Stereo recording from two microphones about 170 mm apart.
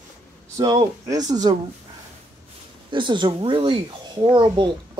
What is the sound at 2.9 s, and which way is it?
Speech, 30° right (ahead or behind).